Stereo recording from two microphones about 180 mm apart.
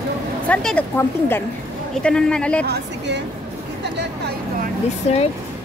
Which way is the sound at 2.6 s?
70° right (ahead or behind).